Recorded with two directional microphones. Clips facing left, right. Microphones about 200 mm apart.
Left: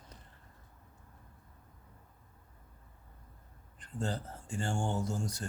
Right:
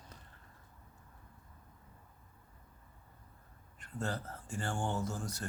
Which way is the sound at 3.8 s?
30° left (ahead or behind).